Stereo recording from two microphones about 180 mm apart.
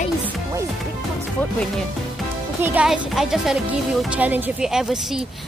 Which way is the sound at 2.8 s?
5° right (ahead or behind).